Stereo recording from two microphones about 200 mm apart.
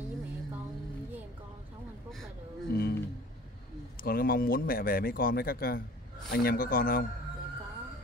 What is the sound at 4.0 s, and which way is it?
Speech, 50° left (ahead or behind).